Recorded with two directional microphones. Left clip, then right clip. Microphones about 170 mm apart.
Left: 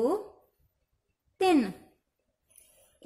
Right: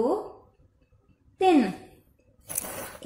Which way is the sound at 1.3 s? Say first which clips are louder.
Right 4 dB; 20° left (ahead or behind).